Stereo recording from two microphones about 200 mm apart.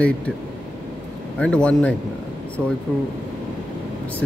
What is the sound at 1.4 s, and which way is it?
Speech, 5° left (ahead or behind).